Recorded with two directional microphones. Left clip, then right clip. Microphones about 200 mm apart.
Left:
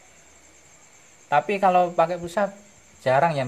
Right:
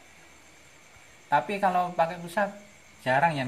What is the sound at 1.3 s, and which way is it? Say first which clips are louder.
Speech: left 5 dB; 50° left (ahead or behind).